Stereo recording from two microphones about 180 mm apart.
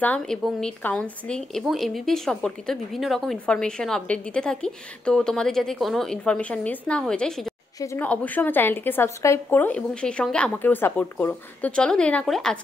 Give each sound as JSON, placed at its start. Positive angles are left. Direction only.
{"t": 0.0, "sound": "speech", "side_deg": 5}